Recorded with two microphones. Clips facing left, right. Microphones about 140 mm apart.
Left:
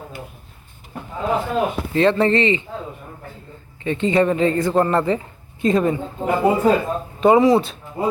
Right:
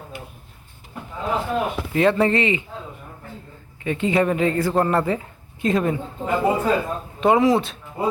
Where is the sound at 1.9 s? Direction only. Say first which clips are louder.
Left 1 dB; 5° right (ahead or behind).